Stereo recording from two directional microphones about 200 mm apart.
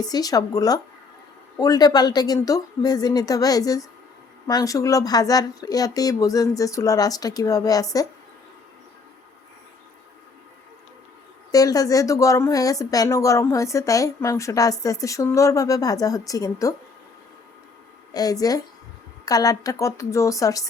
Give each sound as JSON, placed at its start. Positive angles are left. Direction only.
{"t": 0.0, "sound": "a woman's voice", "side_deg": 20}
{"t": 11.5, "sound": "speech", "side_deg": 20}
{"t": 18.1, "sound": "speech", "side_deg": 20}